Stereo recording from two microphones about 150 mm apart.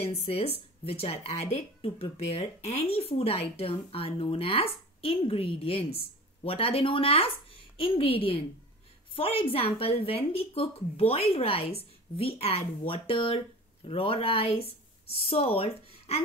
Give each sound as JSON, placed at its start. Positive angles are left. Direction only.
{"t": 0.0, "sound": "speech", "side_deg": 45}